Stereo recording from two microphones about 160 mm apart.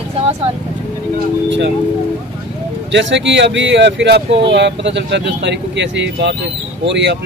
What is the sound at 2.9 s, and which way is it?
Speech, 90° right.